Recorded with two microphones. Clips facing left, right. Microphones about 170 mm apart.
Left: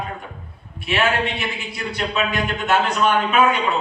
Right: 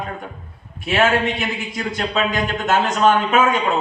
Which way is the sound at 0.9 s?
45° right (ahead or behind).